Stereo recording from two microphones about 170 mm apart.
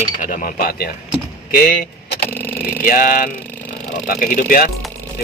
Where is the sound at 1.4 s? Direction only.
70° left (ahead or behind).